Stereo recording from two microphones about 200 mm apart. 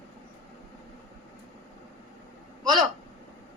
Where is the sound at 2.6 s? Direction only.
20° right (ahead or behind).